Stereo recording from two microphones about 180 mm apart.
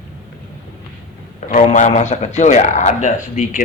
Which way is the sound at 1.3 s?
45° left (ahead or behind).